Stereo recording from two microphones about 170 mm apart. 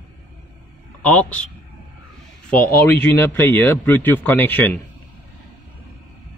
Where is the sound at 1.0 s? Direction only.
5° left (ahead or behind).